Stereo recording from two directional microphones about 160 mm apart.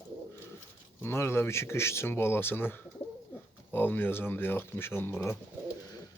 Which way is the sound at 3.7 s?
10° left (ahead or behind).